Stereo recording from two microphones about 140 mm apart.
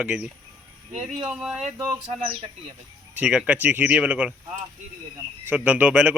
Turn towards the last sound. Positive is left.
turn(degrees=-10)  # may be behind; listen again after turning